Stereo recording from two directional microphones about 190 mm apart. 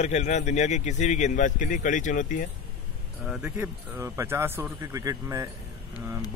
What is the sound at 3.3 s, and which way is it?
Speech, 10° right (ahead or behind).